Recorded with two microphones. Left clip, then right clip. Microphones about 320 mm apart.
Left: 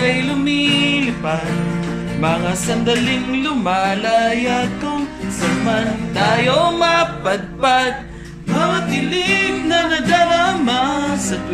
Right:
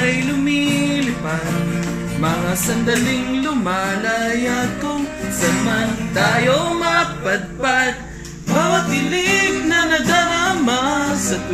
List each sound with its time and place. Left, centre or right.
0.0 s music: centre
3.6 s music: centre
6.1 s music: centre
9.1 s music: centre